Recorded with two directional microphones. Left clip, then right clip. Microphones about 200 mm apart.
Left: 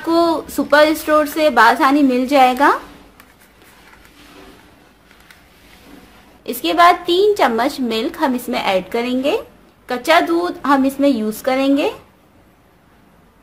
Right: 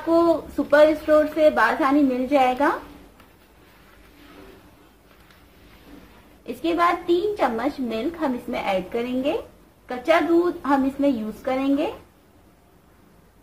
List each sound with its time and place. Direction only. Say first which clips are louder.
0.1 s a woman's voice: left 3 dB; 60° left (ahead or behind)
6.4 s a woman's voice: left 9 dB; 60° left (ahead or behind)